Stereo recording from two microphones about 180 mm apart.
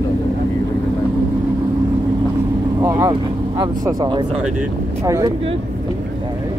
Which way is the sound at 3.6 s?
20° right (ahead or behind).